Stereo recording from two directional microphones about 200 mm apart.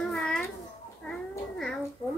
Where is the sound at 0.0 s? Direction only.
5° left (ahead or behind).